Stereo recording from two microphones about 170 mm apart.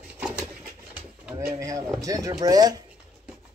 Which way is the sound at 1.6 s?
20° right (ahead or behind).